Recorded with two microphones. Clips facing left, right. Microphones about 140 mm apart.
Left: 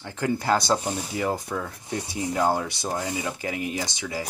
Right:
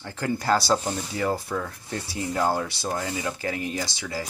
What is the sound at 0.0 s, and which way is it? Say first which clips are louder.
Speech: left 1 dB; 15° left (ahead or behind).